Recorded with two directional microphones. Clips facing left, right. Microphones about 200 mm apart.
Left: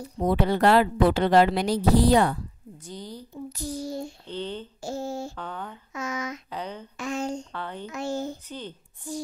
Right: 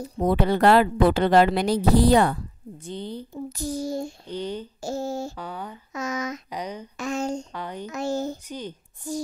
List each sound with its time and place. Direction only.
0.2 s a woman's voice: 60° right (ahead or behind)
2.8 s a woman's voice: 25° right (ahead or behind)
3.3 s child singing: 45° right (ahead or behind)
4.3 s speech: 10° right (ahead or behind)
4.7 s speech: 40° right (ahead or behind)
5.3 s speech: 10° right (ahead or behind)
5.9 s speech: 40° right (ahead or behind)
6.5 s speech: 15° right (ahead or behind)
7.0 s child singing: 40° right (ahead or behind)
7.5 s speech: 15° right (ahead or behind)
7.8 s speech: 40° right (ahead or behind)
8.5 s speech: 15° right (ahead or behind)